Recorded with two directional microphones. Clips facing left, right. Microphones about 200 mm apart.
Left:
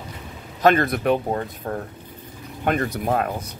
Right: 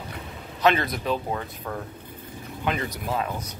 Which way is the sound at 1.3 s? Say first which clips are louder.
Left 5 dB; 40° left (ahead or behind).